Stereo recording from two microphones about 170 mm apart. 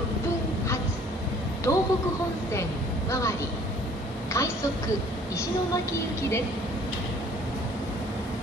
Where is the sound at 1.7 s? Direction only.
15° left (ahead or behind).